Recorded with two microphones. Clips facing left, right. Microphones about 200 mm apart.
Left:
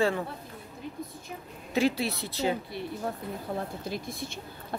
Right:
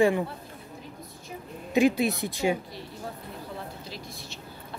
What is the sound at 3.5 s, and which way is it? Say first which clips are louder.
Speech: left 5 dB; 50° left (ahead or behind).